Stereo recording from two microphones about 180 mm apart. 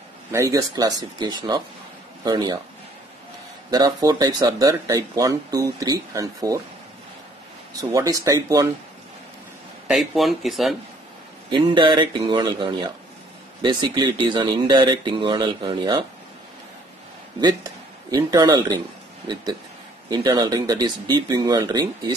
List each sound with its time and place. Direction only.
0.3 s speech: 15° right (ahead or behind)
3.7 s speech: 20° right (ahead or behind)
7.9 s speech: 20° right (ahead or behind)
9.8 s speech: centre (ahead or behind)
11.5 s speech: 25° right (ahead or behind)
18.1 s speech: 20° right (ahead or behind)
20.1 s speech: 20° right (ahead or behind)